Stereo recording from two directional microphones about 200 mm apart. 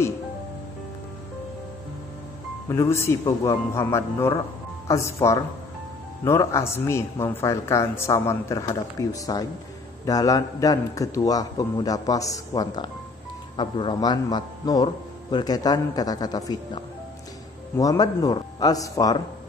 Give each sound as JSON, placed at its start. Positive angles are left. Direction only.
{"t": 2.7, "sound": "a man's voice", "side_deg": 15}